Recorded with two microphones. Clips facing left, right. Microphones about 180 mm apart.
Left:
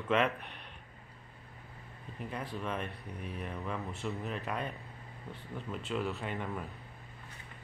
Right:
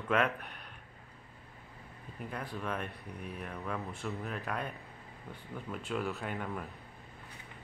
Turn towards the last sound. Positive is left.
turn(degrees=0)  # may be behind; listen again after turning